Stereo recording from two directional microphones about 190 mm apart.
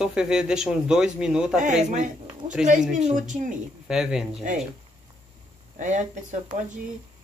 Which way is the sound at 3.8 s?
5° right (ahead or behind).